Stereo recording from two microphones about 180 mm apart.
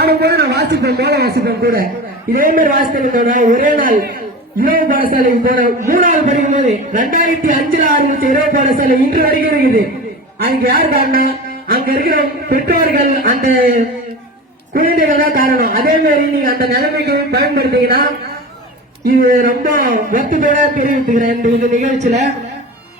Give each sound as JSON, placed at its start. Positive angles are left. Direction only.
{"t": 0.0, "sound": "speech", "side_deg": -60}